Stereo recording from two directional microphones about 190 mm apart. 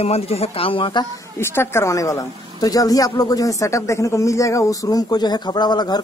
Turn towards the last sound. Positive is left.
turn(degrees=20)  # may be behind; listen again after turning